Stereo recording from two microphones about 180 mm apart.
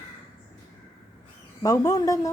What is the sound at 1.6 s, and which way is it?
Speech, 20° left (ahead or behind).